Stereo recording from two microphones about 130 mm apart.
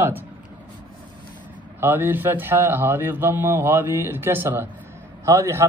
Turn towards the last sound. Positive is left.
turn(degrees=-25)  # may be behind; listen again after turning